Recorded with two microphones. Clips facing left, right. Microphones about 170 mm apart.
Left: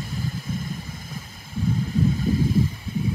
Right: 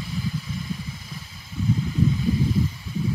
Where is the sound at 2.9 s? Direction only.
50° left (ahead or behind).